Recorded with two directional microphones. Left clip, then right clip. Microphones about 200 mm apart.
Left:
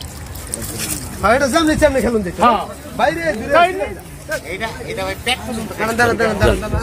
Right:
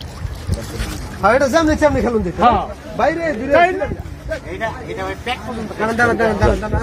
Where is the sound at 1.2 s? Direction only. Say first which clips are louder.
Right 1 dB; 50° right (ahead or behind).